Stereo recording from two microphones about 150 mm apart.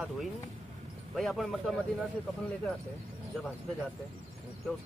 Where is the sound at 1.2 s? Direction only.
Centre (ahead or behind).